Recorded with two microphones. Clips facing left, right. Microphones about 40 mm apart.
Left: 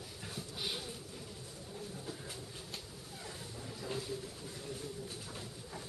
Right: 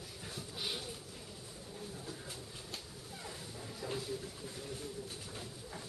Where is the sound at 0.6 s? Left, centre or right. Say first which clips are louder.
Even; centre.